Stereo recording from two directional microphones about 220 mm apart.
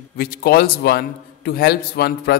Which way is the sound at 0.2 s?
45° left (ahead or behind).